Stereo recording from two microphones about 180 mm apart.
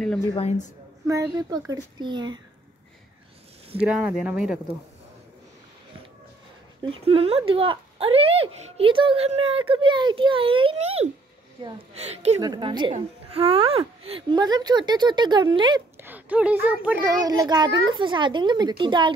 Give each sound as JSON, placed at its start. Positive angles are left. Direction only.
{"t": 0.4, "sound": "a woman's voice", "side_deg": 40}
{"t": 1.0, "sound": "a child's voice", "side_deg": -15}
{"t": 3.7, "sound": "speech", "side_deg": -5}
{"t": 6.8, "sound": "a child's voice", "side_deg": -30}
{"t": 12.0, "sound": "speech", "side_deg": -35}
{"t": 12.4, "sound": "a child's voice", "side_deg": -25}
{"t": 16.0, "sound": "a child's voice", "side_deg": -10}